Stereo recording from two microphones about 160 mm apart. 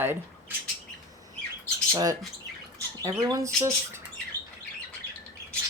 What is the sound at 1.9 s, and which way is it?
Speech, 20° right (ahead or behind).